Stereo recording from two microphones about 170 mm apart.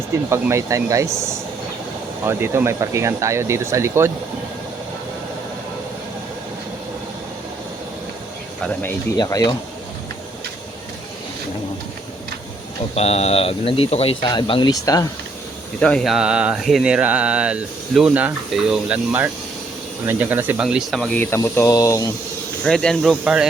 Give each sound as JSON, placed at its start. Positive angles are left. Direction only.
{"t": 0.3, "sound": "speech", "side_deg": -15}
{"t": 2.2, "sound": "speech", "side_deg": -15}
{"t": 9.1, "sound": "speech", "side_deg": 25}
{"t": 13.0, "sound": "speech", "side_deg": 40}
{"t": 15.8, "sound": "speech", "side_deg": 5}
{"t": 22.6, "sound": "speech", "side_deg": 5}